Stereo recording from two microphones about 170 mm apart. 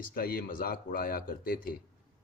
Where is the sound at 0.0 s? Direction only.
60° left (ahead or behind).